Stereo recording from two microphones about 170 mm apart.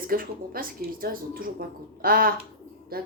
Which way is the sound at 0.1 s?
55° right (ahead or behind).